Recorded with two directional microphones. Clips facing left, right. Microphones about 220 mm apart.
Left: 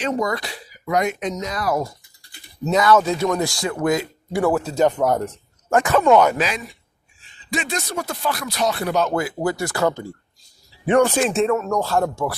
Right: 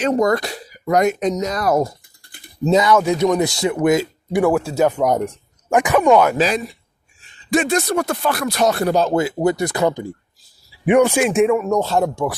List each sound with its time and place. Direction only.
0.0 s speech: 45° right (ahead or behind)
2.6 s speech: 25° right (ahead or behind)
6.3 s speech: 35° right (ahead or behind)
7.5 s speech: 50° right (ahead or behind)
8.9 s speech: 30° right (ahead or behind); by 12.4 s 15° right (ahead or behind)